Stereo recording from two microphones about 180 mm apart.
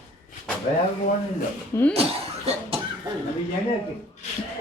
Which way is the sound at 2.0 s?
35° right (ahead or behind).